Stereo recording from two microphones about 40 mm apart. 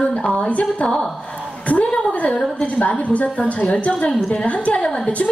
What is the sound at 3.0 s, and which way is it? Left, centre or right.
A woman's voice, left.